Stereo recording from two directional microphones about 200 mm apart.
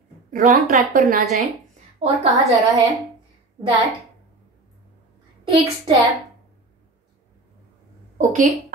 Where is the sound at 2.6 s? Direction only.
15° right (ahead or behind).